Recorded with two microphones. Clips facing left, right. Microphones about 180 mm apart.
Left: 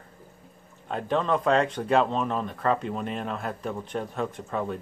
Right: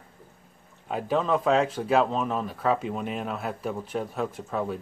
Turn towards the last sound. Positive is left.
turn(degrees=-5)  # may be behind; listen again after turning